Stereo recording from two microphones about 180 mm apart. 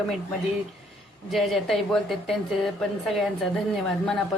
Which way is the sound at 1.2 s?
Centre (ahead or behind).